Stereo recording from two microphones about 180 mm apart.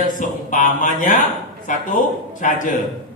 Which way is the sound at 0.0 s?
45° left (ahead or behind).